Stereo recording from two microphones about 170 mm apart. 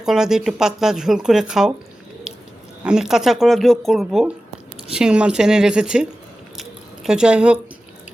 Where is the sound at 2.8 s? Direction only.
5° right (ahead or behind).